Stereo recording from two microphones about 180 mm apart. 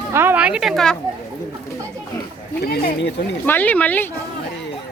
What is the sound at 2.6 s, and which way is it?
Speech, 65° left (ahead or behind).